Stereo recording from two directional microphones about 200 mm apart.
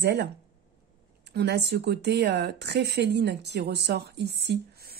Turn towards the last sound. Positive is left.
turn(degrees=-55)  # may be behind; listen again after turning